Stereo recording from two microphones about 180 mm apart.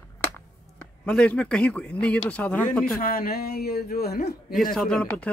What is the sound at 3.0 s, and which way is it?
Speech, 55° left (ahead or behind).